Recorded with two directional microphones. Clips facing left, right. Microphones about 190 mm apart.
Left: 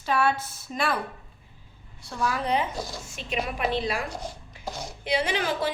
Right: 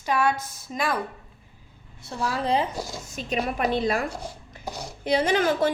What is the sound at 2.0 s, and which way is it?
A woman's voice, 25° right (ahead or behind).